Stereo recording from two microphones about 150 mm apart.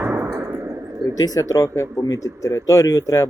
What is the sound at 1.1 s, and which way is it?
A man's voice, 25° left (ahead or behind).